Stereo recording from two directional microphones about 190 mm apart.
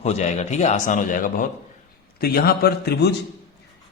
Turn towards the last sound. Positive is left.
turn(degrees=60)  # may be behind; listen again after turning